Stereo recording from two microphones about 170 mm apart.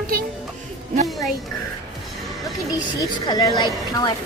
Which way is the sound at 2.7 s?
25° left (ahead or behind).